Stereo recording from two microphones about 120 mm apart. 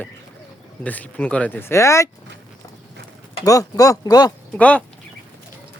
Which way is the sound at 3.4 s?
30° left (ahead or behind).